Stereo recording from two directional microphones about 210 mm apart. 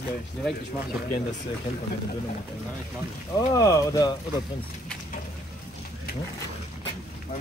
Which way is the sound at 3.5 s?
15° left (ahead or behind).